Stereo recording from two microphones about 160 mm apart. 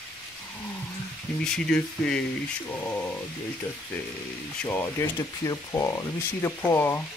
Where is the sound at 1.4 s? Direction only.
5° left (ahead or behind).